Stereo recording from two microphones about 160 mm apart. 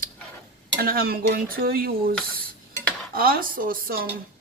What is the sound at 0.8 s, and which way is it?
Cutlery, 70° right (ahead or behind).